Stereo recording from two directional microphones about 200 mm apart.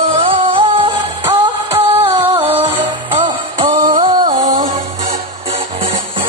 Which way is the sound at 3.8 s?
40° right (ahead or behind).